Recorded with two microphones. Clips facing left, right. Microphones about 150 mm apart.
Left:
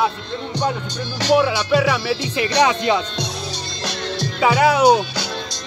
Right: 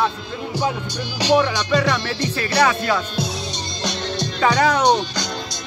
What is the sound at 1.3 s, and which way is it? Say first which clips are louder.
Speech: left 2 dB; 10° left (ahead or behind).